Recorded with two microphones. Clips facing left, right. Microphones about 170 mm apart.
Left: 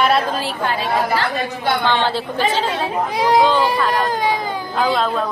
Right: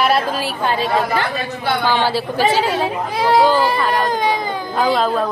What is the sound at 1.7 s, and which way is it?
A woman's voice, 5° right (ahead or behind).